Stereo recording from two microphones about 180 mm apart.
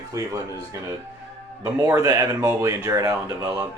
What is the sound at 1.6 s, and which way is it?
Speech, 15° right (ahead or behind).